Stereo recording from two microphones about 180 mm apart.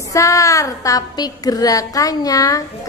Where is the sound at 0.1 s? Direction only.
15° left (ahead or behind).